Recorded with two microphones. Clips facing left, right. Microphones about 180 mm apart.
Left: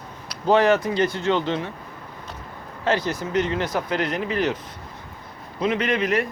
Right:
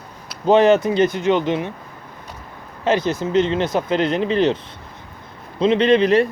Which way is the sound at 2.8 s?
20° right (ahead or behind).